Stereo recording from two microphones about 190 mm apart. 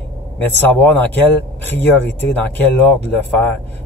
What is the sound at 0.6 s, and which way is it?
Speech, 10° left (ahead or behind).